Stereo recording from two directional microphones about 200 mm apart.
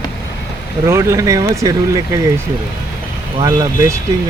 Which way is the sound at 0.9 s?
15° right (ahead or behind).